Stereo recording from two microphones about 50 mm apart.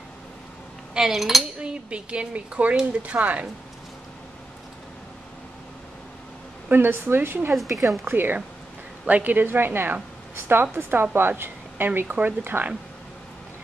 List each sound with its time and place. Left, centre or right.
0.9 s cutlery: centre
1.6 s a woman's voice: centre
6.7 s a woman's voice: right